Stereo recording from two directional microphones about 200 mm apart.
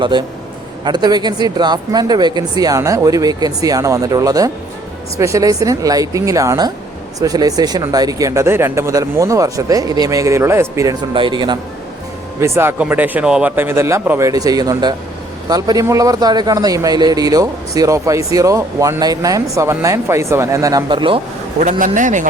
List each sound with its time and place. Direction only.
0.0 s a man's voice: 25° right (ahead or behind)
11.1 s speech: 25° right (ahead or behind)
12.4 s a man's voice: 10° right (ahead or behind)
21.6 s speech: 40° right (ahead or behind)